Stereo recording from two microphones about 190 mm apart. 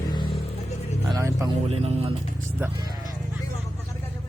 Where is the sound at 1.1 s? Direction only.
20° right (ahead or behind).